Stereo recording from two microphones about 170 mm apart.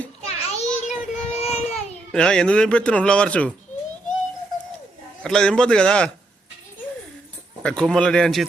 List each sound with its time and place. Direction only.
0.3 s child singing: 40° left (ahead or behind)
2.1 s speech: 5° left (ahead or behind)
5.2 s speech: 5° left (ahead or behind)
7.6 s speech: 5° left (ahead or behind)